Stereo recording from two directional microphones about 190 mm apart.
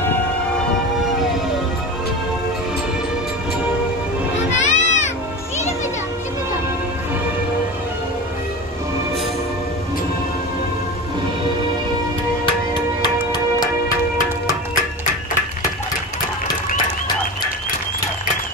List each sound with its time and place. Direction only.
4.6 s music: 40° left (ahead or behind)